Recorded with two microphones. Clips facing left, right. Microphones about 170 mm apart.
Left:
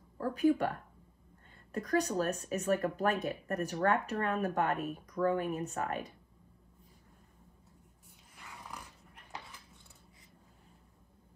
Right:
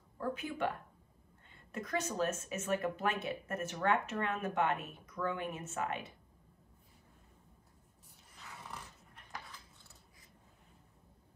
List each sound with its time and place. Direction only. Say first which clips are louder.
0.2 s speech: left 8 dB; 40° left (ahead or behind)
1.7 s speech: left 6 dB; 35° left (ahead or behind)
9.1 s a sound: left 1 dB; 10° left (ahead or behind)